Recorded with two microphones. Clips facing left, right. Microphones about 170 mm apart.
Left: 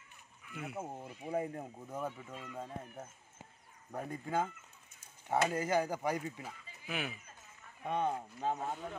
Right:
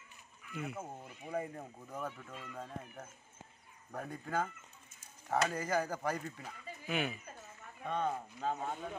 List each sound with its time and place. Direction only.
0.6 s speech: 5° left (ahead or behind)
0.9 s speech: 25° left (ahead or behind)
2.8 s speech: 5° left (ahead or behind)
7.8 s speech: 15° left (ahead or behind)
8.5 s speech: 5° right (ahead or behind)